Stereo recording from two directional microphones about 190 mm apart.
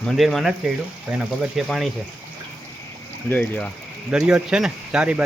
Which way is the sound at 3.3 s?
5° left (ahead or behind).